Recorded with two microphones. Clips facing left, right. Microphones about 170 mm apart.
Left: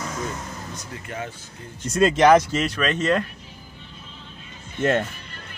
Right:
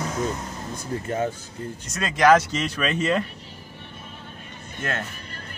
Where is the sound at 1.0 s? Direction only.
35° right (ahead or behind).